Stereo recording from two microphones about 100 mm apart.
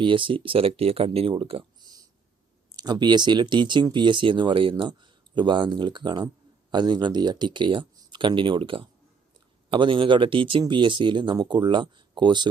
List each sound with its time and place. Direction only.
0.0 s speech: 55° right (ahead or behind)
1.8 s a sound: 40° right (ahead or behind)
2.7 s speech: 45° right (ahead or behind)